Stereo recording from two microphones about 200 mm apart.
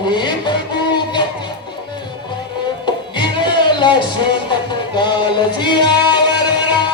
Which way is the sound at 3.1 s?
25° left (ahead or behind).